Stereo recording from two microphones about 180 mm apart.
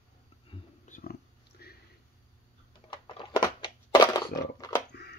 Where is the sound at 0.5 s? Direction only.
30° left (ahead or behind).